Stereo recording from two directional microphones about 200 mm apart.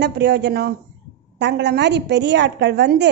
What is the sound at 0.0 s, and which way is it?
A woman's voice, 55° right (ahead or behind).